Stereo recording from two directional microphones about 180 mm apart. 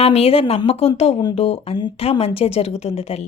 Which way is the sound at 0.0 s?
35° left (ahead or behind).